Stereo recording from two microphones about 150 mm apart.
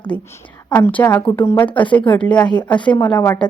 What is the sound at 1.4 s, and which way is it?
A woman's voice, 15° left (ahead or behind).